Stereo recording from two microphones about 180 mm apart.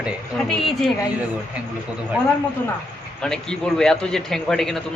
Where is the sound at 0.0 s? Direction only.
Centre (ahead or behind).